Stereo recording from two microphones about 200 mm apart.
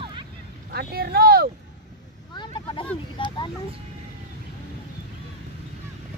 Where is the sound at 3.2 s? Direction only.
25° left (ahead or behind).